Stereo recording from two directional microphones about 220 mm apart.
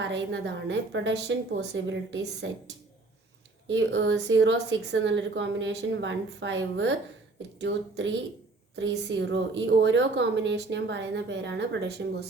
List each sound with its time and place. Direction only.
0.0 s speech: 55° right (ahead or behind)
3.7 s a woman's voice: 55° right (ahead or behind)